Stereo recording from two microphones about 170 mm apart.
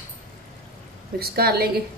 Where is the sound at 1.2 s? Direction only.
65° right (ahead or behind).